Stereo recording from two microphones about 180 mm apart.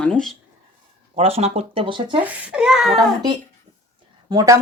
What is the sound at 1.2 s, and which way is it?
Speech, 35° right (ahead or behind).